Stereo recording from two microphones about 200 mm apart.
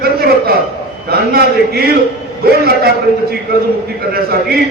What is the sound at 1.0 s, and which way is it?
A man's voice, 50° right (ahead or behind).